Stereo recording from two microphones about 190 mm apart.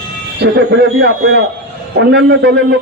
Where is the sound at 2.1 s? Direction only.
60° right (ahead or behind).